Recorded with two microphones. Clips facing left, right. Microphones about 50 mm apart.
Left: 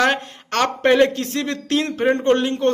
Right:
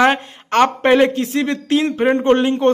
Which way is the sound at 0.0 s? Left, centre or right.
Centre.